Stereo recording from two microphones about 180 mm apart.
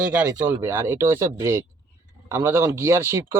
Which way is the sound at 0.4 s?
10° right (ahead or behind).